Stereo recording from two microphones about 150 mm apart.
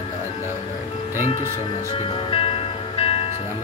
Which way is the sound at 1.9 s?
40° left (ahead or behind).